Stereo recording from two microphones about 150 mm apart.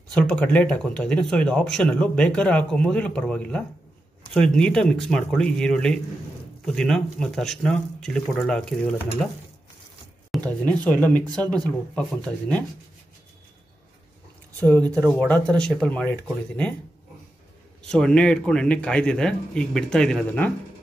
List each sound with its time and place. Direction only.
0.1 s speech: 5° left (ahead or behind)
10.4 s speech: 10° left (ahead or behind)
14.6 s speech: 10° left (ahead or behind)
17.8 s speech: 5° left (ahead or behind)